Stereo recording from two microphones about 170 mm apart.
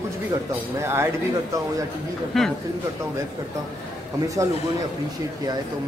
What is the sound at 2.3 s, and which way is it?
Speech, centre (ahead or behind).